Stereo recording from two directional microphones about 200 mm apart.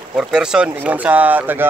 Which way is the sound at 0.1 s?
5° right (ahead or behind).